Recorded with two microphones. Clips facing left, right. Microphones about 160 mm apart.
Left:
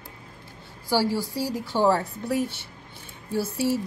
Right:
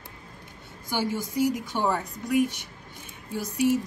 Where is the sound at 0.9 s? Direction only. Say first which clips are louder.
Left 4 dB; 20° right (ahead or behind).